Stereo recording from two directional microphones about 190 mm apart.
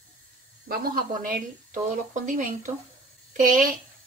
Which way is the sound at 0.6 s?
50° right (ahead or behind).